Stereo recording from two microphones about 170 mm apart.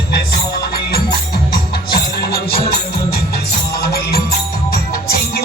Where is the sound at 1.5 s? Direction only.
70° left (ahead or behind).